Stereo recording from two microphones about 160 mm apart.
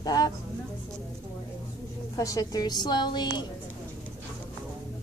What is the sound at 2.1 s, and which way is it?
A woman's voice, 20° left (ahead or behind).